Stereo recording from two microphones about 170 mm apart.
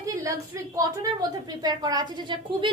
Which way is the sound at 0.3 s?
20° right (ahead or behind).